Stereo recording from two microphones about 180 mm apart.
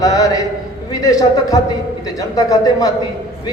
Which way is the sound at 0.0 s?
20° left (ahead or behind).